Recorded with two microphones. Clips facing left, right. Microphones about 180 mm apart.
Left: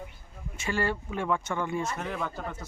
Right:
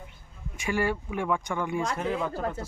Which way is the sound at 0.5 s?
15° right (ahead or behind).